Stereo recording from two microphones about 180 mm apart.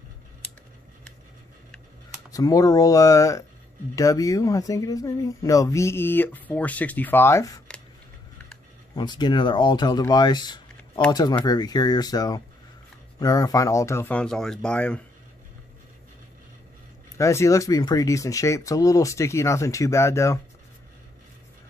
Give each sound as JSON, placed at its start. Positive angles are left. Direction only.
{"t": 2.3, "sound": "speech", "side_deg": 20}
{"t": 8.9, "sound": "speech", "side_deg": 25}
{"t": 17.2, "sound": "speech", "side_deg": 15}